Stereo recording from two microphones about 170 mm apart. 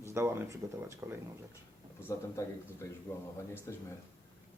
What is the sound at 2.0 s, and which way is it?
Speech, 15° left (ahead or behind).